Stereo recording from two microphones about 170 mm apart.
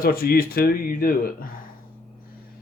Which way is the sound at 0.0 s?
60° left (ahead or behind).